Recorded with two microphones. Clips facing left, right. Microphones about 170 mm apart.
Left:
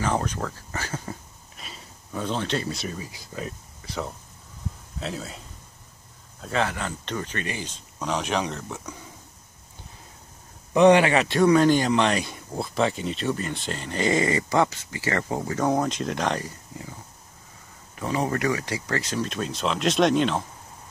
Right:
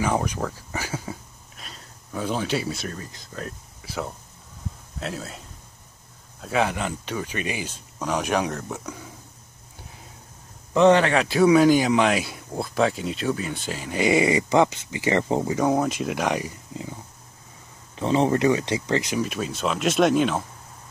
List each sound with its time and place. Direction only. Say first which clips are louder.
0.0 s speech: right 2 dB; 10° right (ahead or behind)
1.6 s a sound: left 1 dB; centre (ahead or behind)
2.2 s speech: right 2 dB; 10° right (ahead or behind)
6.4 s speech: right 3 dB; 10° right (ahead or behind)
10.7 s speech: even; 15° left (ahead or behind)
11.1 s speech: right 1 dB; centre (ahead or behind); by 15.5 s 20° right (ahead or behind)
15.5 s speech: left 1 dB; 5° right (ahead or behind)
17.9 s speech: right 5 dB; 25° right (ahead or behind); by 20.4 s 5° right (ahead or behind)